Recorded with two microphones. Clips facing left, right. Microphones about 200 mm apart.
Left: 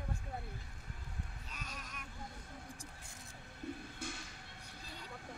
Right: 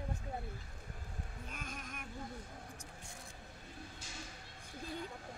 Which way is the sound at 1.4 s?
50° right (ahead or behind).